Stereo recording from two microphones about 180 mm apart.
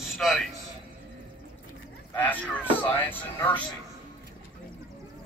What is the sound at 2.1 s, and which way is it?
Speech, 10° left (ahead or behind).